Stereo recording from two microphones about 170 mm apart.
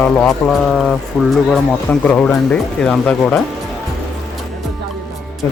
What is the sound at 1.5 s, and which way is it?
Speech, 5° left (ahead or behind).